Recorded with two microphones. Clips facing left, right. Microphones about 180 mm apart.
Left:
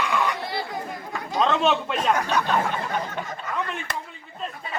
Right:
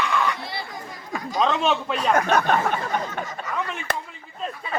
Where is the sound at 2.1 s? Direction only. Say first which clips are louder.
Right 4 dB; 50° right (ahead or behind).